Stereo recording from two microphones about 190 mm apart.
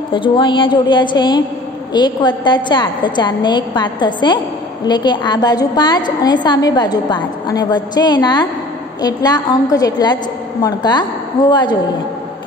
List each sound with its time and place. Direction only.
0.1 s a woman's voice: 25° left (ahead or behind)